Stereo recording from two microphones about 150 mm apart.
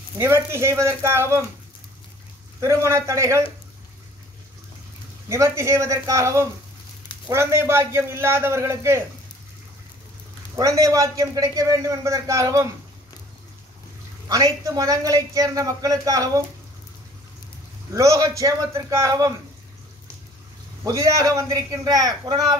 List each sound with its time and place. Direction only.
0.2 s a man's voice: 15° right (ahead or behind)
2.6 s a man's voice: 20° right (ahead or behind)
5.3 s a man's voice: 20° right (ahead or behind)
10.5 s a man's voice: 20° right (ahead or behind)
14.3 s a man's voice: 25° right (ahead or behind)
17.9 s a man's voice: 20° right (ahead or behind)
20.8 s a man's voice: 20° right (ahead or behind)